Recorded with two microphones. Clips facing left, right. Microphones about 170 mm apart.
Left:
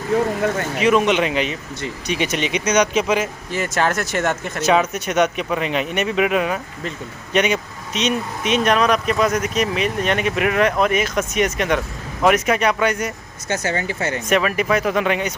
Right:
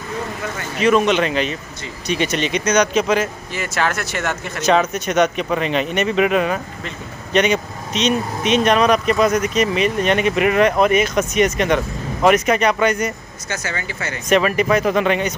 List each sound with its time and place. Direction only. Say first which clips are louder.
0.7 s speech: right 2 dB; 10° left (ahead or behind)
3.5 s speech: left 2 dB; 45° left (ahead or behind)
4.6 s speech: right 1 dB; 5° left (ahead or behind)
13.6 s speech: left 5 dB; 35° left (ahead or behind)
14.3 s speech: right 4 dB; 5° left (ahead or behind)